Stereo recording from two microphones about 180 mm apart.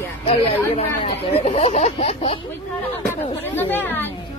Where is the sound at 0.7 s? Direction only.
35° left (ahead or behind).